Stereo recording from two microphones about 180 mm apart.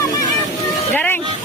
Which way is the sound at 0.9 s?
10° left (ahead or behind).